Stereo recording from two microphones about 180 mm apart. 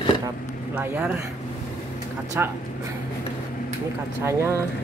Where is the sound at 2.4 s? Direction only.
10° right (ahead or behind).